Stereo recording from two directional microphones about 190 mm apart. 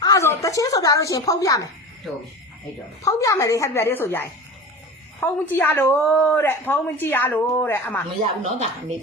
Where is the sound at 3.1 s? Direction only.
15° left (ahead or behind).